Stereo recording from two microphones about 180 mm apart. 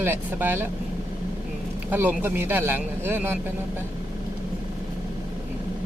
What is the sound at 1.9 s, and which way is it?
A man's voice, 10° right (ahead or behind).